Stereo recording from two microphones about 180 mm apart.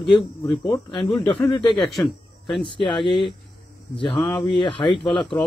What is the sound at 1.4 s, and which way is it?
Speech, 15° left (ahead or behind).